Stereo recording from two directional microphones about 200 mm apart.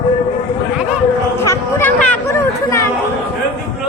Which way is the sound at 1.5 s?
10° left (ahead or behind).